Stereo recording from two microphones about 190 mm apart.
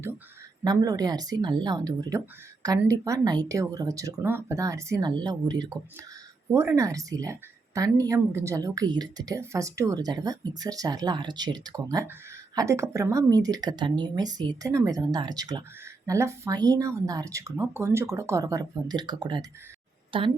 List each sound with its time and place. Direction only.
0.6 s a woman's voice: 20° right (ahead or behind)